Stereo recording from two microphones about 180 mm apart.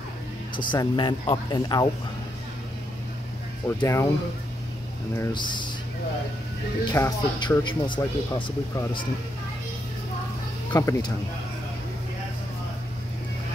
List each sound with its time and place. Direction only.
0.7 s speech: 25° left (ahead or behind)
3.6 s speech: 15° left (ahead or behind)
5.1 s speech: 20° left (ahead or behind)
6.8 s speech: 20° left (ahead or behind)
10.7 s speech: 15° left (ahead or behind)